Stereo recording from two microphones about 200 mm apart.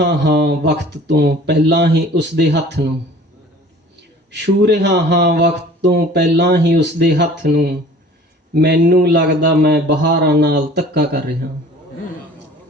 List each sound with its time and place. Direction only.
0.0 s speech: 60° right (ahead or behind)
4.3 s speech: 60° right (ahead or behind)